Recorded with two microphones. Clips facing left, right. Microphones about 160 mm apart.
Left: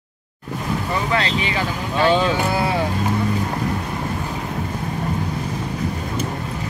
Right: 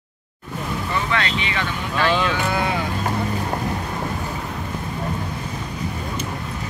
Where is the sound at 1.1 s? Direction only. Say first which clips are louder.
Left 3 dB; 30° left (ahead or behind).